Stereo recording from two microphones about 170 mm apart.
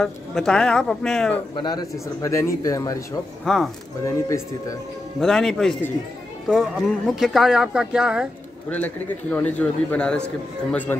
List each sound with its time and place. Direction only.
0.0 s speech: 5° left (ahead or behind)
1.6 s speech: 25° left (ahead or behind)
3.4 s speech: centre (ahead or behind)
4.0 s a man's voice: 20° left (ahead or behind)
5.2 s speech: 5° left (ahead or behind)
8.6 s a man's voice: 10° left (ahead or behind)